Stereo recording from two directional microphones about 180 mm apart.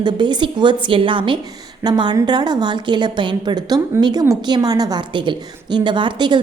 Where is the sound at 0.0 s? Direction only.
25° right (ahead or behind).